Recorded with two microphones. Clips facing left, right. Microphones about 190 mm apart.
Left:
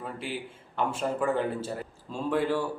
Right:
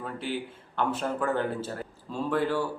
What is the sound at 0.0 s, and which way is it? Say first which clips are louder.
A man's voice: right 2 dB; 5° left (ahead or behind).